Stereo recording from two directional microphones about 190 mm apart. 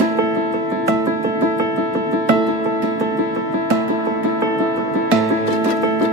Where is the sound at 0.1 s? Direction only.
15° right (ahead or behind).